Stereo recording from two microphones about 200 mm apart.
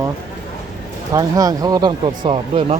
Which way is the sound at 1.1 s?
20° right (ahead or behind).